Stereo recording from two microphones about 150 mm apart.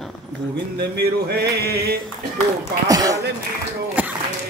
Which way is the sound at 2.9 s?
25° right (ahead or behind).